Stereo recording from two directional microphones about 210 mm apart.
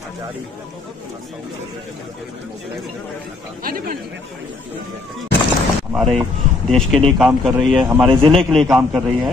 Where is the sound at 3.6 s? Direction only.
45° right (ahead or behind).